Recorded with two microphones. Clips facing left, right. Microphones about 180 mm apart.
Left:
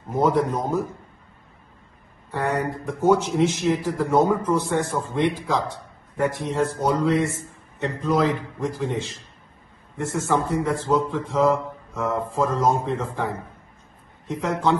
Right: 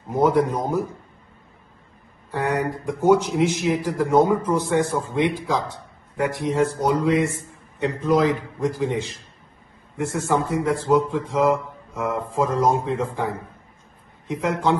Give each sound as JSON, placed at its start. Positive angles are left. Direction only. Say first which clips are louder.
{"t": 0.1, "sound": "a man's voice", "louder": "right 2 dB", "side_deg": -10}
{"t": 2.3, "sound": "a man's voice", "louder": "right 1 dB", "side_deg": -15}
{"t": 9.9, "sound": "a man's voice", "louder": "right 1 dB", "side_deg": -10}